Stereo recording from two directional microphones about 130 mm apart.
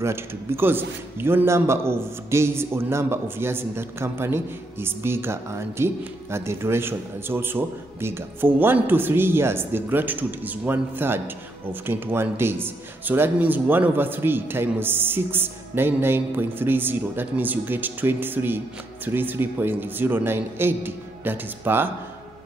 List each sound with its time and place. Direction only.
0.0 s a man's voice: 20° right (ahead or behind)